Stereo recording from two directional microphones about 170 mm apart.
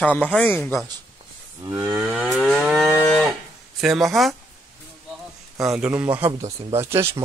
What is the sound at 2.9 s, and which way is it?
Cattle, 10° left (ahead or behind).